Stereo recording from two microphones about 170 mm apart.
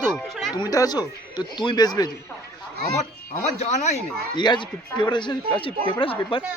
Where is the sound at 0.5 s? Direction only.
20° left (ahead or behind).